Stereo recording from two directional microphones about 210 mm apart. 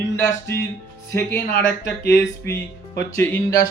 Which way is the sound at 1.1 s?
10° left (ahead or behind).